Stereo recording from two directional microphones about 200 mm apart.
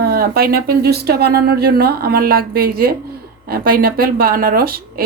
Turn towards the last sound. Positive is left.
turn(degrees=-50)  # may be behind; listen again after turning